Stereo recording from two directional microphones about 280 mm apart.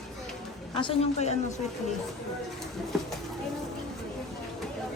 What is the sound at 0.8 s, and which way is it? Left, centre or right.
Speech, left.